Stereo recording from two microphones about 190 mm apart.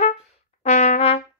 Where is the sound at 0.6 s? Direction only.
35° left (ahead or behind).